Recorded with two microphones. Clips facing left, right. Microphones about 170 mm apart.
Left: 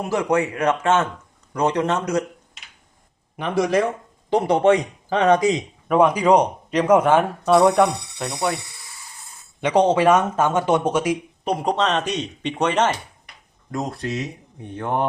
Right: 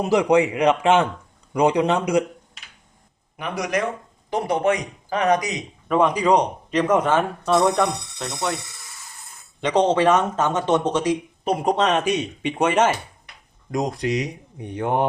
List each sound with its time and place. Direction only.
0.0 s speech: 15° right (ahead or behind)
3.6 s speech: 25° left (ahead or behind)
5.9 s speech: 10° left (ahead or behind)
9.6 s speech: 10° left (ahead or behind)
11.6 s speech: 10° right (ahead or behind)